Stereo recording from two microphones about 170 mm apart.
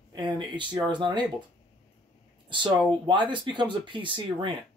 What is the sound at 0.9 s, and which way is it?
Speech, 25° right (ahead or behind).